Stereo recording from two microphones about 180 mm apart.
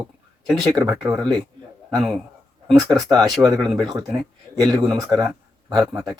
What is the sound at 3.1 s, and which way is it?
Speech, 20° right (ahead or behind).